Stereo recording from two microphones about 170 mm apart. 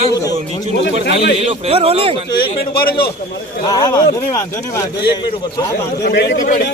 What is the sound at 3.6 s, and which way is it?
A man's voice, 20° left (ahead or behind).